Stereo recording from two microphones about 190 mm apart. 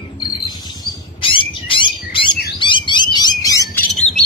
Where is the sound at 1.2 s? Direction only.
25° left (ahead or behind).